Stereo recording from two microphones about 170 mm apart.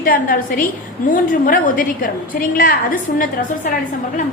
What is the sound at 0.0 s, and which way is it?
A woman's voice, 55° left (ahead or behind).